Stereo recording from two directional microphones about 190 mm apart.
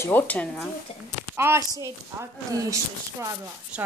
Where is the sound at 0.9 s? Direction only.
30° left (ahead or behind).